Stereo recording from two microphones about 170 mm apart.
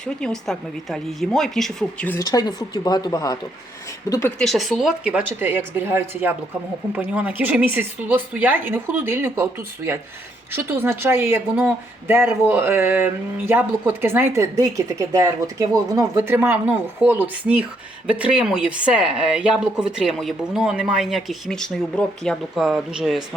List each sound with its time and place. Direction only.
0.0 s speech: 5° left (ahead or behind)
2.1 s speech: 25° left (ahead or behind)
4.4 s speech: centre (ahead or behind)